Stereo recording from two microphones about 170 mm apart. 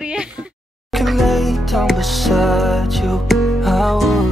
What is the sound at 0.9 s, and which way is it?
Music, centre (ahead or behind).